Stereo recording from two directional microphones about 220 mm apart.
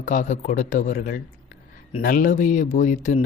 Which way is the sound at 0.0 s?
35° left (ahead or behind).